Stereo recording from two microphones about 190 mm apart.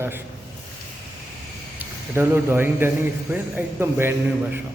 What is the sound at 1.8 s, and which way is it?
A man's voice, 10° right (ahead or behind).